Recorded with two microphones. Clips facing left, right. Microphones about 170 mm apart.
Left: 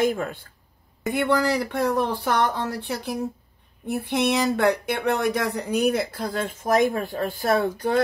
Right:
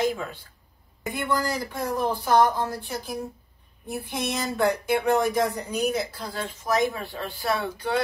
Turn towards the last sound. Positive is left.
turn(degrees=45)  # may be behind; listen again after turning